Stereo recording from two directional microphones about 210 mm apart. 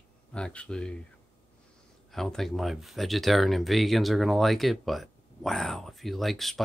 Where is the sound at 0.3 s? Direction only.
5° left (ahead or behind).